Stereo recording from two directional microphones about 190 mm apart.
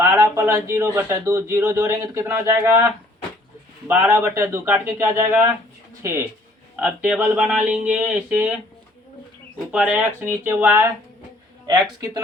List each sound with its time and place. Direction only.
0.0 s a man's voice: 15° right (ahead or behind)
9.7 s a man's voice: 5° right (ahead or behind)